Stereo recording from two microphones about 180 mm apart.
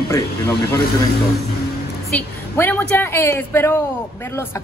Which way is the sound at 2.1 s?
10° left (ahead or behind).